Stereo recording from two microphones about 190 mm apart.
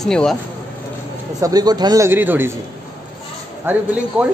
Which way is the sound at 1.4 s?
20° right (ahead or behind).